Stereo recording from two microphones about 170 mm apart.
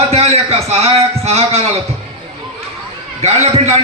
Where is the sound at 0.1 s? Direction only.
35° right (ahead or behind).